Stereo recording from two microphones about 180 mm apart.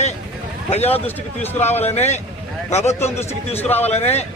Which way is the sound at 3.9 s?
35° left (ahead or behind).